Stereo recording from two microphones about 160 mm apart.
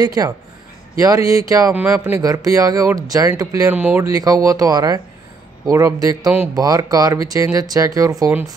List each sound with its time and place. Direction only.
0.0 s speech: 25° right (ahead or behind)
1.7 s speech: 5° right (ahead or behind)
2.1 s speech: 20° right (ahead or behind)
6.2 s speech: 10° right (ahead or behind)
6.5 s speech: 25° right (ahead or behind)